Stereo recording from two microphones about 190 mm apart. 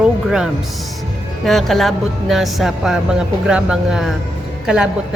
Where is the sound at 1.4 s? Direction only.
Centre (ahead or behind).